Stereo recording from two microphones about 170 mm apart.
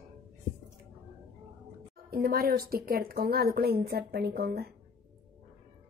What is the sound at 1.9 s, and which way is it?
Speech, 60° right (ahead or behind).